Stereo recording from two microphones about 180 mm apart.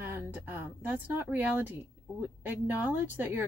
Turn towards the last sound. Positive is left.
turn(degrees=-10)  # may be behind; listen again after turning